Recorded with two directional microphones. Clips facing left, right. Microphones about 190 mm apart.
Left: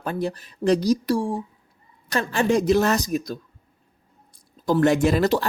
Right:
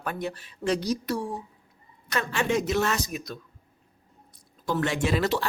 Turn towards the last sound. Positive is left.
turn(degrees=40)  # may be behind; listen again after turning